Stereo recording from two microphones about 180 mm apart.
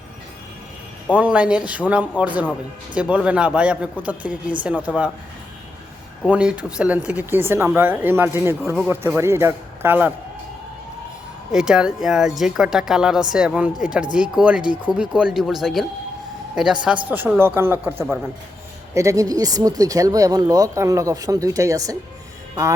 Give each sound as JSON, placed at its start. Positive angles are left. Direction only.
{"t": 1.1, "sound": "speech", "side_deg": -5}
{"t": 6.2, "sound": "speech", "side_deg": -5}
{"t": 11.5, "sound": "speech", "side_deg": -5}
{"t": 18.9, "sound": "speech", "side_deg": -20}